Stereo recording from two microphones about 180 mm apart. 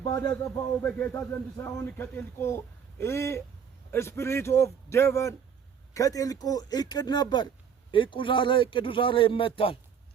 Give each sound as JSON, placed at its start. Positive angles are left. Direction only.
{"t": 0.0, "sound": "a man's voice", "side_deg": 15}